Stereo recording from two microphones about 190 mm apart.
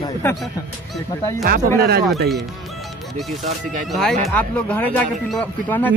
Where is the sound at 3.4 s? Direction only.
45° right (ahead or behind).